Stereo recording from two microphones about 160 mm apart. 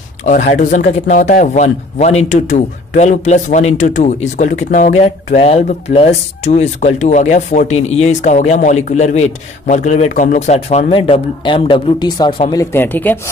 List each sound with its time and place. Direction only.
0.2 s speech: 50° left (ahead or behind)
5.0 s speech: 40° left (ahead or behind)
12.7 s speech: 15° left (ahead or behind)